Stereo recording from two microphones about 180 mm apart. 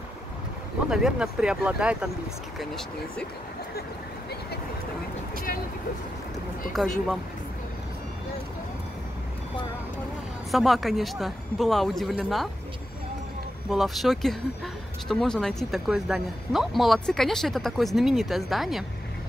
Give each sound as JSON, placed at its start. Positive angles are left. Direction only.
{"t": 0.8, "sound": "a man's voice", "side_deg": -5}
{"t": 6.7, "sound": "a man's voice", "side_deg": 0}
{"t": 10.5, "sound": "a man's voice", "side_deg": 0}
{"t": 13.7, "sound": "a man's voice", "side_deg": 0}